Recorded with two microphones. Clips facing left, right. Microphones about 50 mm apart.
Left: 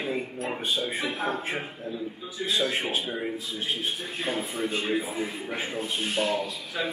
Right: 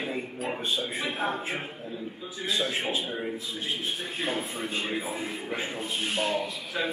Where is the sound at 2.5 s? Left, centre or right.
Left.